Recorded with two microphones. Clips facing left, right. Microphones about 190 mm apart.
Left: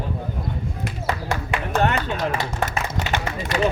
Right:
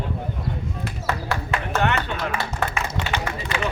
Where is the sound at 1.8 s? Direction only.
40° left (ahead or behind).